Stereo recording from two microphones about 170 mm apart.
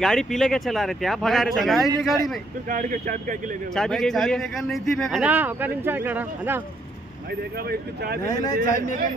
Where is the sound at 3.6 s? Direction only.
5° left (ahead or behind).